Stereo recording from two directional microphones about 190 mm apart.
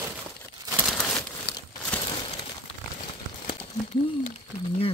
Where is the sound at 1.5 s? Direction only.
60° left (ahead or behind).